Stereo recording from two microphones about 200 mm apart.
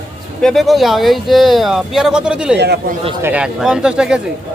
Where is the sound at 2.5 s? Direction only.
55° right (ahead or behind).